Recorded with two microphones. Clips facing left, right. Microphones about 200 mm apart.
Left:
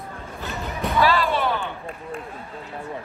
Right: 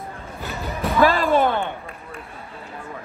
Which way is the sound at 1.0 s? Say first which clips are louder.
Right 4 dB; 45° right (ahead or behind).